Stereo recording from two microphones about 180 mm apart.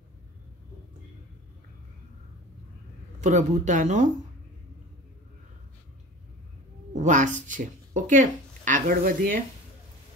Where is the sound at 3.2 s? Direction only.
40° right (ahead or behind).